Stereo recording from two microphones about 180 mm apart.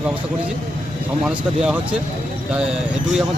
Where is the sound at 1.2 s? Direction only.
5° right (ahead or behind).